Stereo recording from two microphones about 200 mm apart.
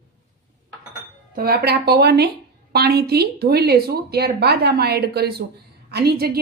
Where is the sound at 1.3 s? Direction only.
45° right (ahead or behind).